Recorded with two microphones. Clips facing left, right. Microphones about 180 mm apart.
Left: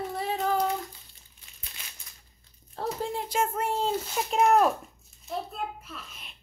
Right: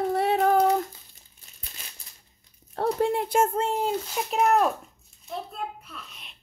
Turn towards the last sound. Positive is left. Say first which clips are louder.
# left 1 dB
turn(degrees=0)  # may be behind; listen again after turning